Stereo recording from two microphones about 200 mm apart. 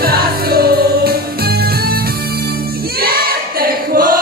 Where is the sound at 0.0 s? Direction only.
50° right (ahead or behind).